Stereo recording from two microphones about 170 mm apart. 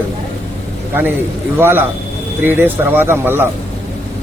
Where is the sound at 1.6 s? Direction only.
10° right (ahead or behind).